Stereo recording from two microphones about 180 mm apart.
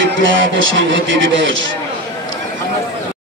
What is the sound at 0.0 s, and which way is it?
Speech, 90° right.